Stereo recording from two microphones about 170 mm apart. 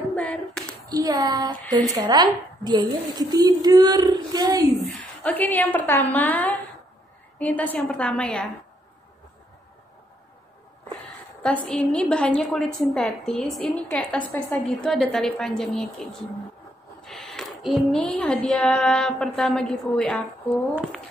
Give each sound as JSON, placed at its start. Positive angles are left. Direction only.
{"t": 0.1, "sound": "clapping", "side_deg": 5}
{"t": 0.8, "sound": "a woman's voice", "side_deg": -20}
{"t": 4.8, "sound": "a woman's voice", "side_deg": 5}
{"t": 11.4, "sound": "a woman's voice", "side_deg": 5}
{"t": 17.0, "sound": "a sound", "side_deg": 0}
{"t": 18.5, "sound": "a woman's voice", "side_deg": 5}